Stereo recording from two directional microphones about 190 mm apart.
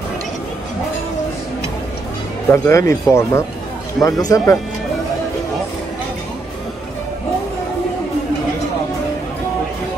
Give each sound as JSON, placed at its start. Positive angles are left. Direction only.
{"t": 2.5, "sound": "speech", "side_deg": 15}